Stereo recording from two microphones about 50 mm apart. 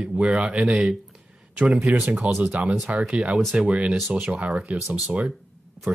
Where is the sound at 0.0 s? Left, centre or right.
Right.